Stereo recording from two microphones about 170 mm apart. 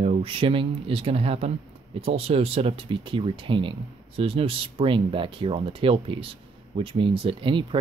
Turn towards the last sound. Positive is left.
turn(degrees=-30)  # may be behind; listen again after turning